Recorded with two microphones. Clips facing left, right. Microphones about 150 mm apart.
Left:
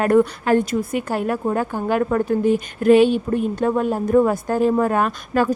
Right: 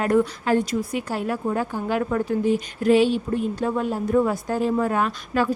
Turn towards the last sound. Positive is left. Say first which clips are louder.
# left 3 dB
turn(degrees=45)  # may be behind; listen again after turning